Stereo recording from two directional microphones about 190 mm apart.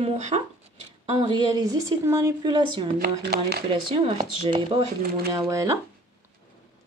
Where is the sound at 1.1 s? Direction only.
20° right (ahead or behind).